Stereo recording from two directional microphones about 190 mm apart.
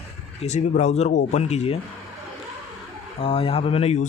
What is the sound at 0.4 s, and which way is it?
Speech, 35° left (ahead or behind).